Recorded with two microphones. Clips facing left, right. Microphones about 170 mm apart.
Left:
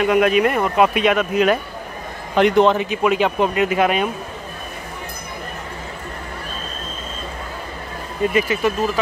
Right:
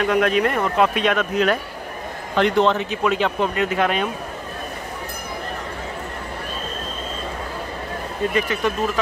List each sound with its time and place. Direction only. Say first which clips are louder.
0.0 s speech: left 3 dB; 10° left (ahead or behind)
8.3 s speech: left 3 dB; 5° left (ahead or behind)